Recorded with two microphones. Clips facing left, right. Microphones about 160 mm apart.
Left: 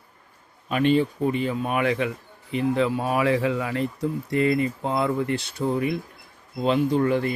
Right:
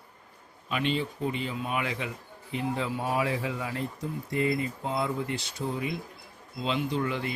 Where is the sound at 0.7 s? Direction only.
50° left (ahead or behind).